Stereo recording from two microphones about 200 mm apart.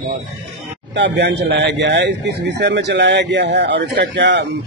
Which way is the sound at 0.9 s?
60° right (ahead or behind).